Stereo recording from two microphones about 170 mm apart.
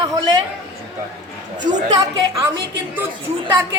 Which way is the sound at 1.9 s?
25° right (ahead or behind).